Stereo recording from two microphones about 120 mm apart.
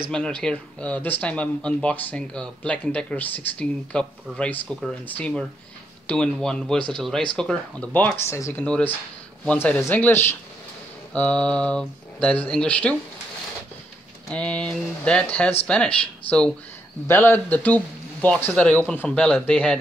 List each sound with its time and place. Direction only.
0.1 s speech: 5° left (ahead or behind)
8.2 s speech: 25° left (ahead or behind)
8.6 s speech: 10° left (ahead or behind)
14.3 s speech: 10° left (ahead or behind)